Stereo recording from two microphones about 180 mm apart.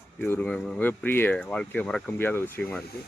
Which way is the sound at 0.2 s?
10° left (ahead or behind).